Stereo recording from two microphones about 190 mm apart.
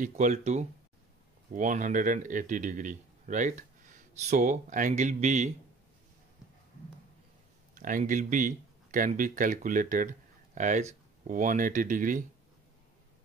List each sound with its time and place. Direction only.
0.0 s speech: 40° right (ahead or behind)
7.7 s speech: 45° right (ahead or behind)